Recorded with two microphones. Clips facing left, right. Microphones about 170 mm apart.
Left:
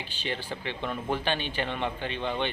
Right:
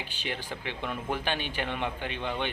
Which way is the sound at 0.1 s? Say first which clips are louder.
Left 2 dB; 10° right (ahead or behind).